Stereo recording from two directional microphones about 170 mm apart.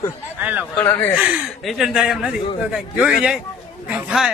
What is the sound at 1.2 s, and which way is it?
Speech, 5° right (ahead or behind).